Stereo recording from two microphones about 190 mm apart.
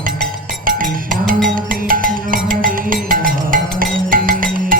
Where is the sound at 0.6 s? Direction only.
45° right (ahead or behind).